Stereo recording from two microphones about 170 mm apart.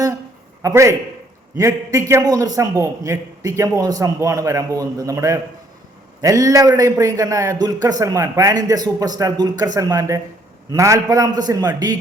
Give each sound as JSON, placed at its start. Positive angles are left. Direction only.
{"t": 0.6, "sound": "a man's voice", "side_deg": -15}